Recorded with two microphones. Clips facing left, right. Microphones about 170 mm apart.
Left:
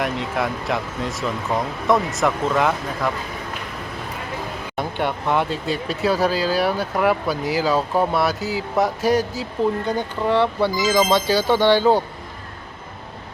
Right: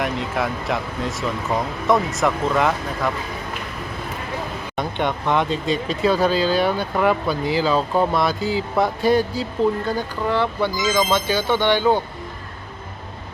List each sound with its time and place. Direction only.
0.0 s speech: centre (ahead or behind)
4.8 s speech: 10° left (ahead or behind)
9.0 s speech: 90° left
9.4 s speech: 20° left (ahead or behind)